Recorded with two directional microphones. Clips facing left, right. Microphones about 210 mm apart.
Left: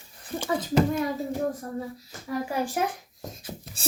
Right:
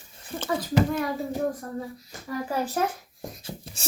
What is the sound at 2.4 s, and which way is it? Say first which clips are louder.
Speech: right 3 dB; 15° left (ahead or behind).